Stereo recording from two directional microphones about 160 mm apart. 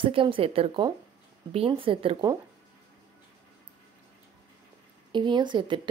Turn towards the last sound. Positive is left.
turn(degrees=-30)  # may be behind; listen again after turning